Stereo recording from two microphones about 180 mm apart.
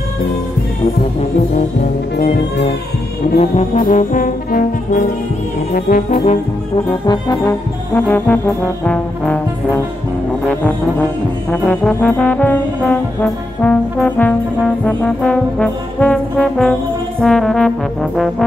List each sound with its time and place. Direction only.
3.7 s brass instrument: 50° left (ahead or behind)
7.1 s brass instrument: 20° left (ahead or behind)
10.4 s music: 10° left (ahead or behind)
11.5 s brass instrument: 5° left (ahead or behind)